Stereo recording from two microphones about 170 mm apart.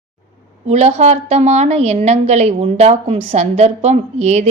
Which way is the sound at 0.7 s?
40° right (ahead or behind).